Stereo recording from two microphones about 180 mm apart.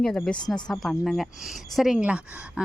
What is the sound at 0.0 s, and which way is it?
Speech, 5° left (ahead or behind).